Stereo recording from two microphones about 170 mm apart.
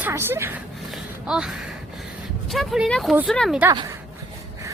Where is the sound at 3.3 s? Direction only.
Centre (ahead or behind).